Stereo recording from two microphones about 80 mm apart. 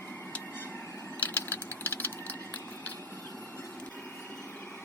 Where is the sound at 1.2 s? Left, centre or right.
Left.